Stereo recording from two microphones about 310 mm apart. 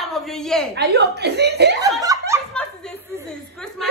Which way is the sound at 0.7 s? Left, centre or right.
Right.